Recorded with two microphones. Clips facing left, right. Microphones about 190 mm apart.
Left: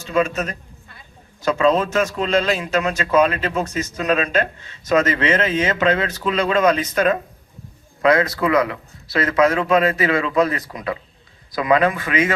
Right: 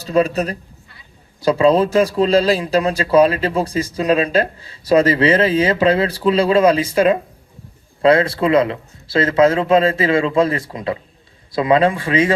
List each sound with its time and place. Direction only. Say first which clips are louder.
0.0 s speech: right 4 dB; 35° right (ahead or behind)